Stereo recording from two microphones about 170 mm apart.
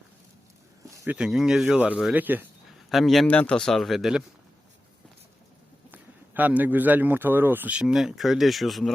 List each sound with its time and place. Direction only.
0.9 s a sound: 20° right (ahead or behind)
1.1 s speech: 5° right (ahead or behind)
2.9 s speech: centre (ahead or behind)
5.9 s speech: 10° right (ahead or behind)